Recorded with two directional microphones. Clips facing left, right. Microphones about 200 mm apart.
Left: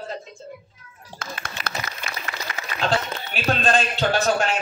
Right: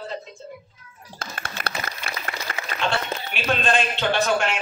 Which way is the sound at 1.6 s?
50° right (ahead or behind).